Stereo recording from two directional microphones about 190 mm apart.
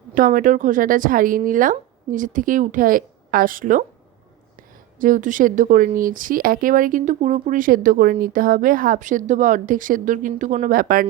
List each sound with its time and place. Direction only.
0.1 s speech: 45° right (ahead or behind)
4.9 s speech: 45° right (ahead or behind)